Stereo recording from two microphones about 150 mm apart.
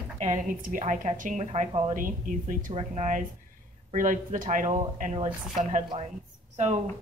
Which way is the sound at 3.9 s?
65° right (ahead or behind).